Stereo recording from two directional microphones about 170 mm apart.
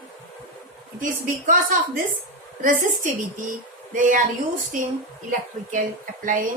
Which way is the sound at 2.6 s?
50° right (ahead or behind).